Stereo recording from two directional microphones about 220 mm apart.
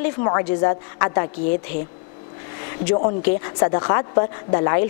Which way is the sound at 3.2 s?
20° left (ahead or behind).